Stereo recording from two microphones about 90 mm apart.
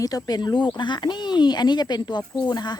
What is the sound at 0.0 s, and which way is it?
Speech, 45° left (ahead or behind).